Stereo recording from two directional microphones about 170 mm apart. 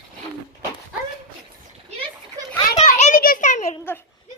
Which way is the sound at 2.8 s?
50° left (ahead or behind).